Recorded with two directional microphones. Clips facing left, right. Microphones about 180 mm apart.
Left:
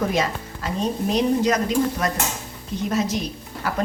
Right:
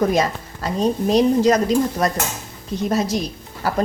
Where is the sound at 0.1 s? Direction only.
40° right (ahead or behind).